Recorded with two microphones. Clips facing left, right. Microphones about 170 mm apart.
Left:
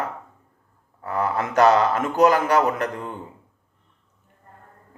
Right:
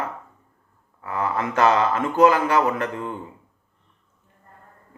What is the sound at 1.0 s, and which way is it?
Speech, 40° left (ahead or behind).